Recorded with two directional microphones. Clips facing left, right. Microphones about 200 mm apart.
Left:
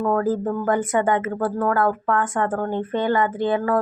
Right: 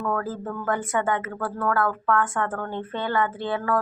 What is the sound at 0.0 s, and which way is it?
A woman's voice, 25° left (ahead or behind).